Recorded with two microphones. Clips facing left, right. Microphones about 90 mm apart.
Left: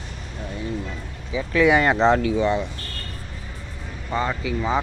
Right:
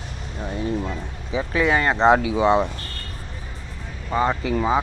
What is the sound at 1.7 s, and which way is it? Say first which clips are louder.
Speech: left 1 dB; 10° left (ahead or behind).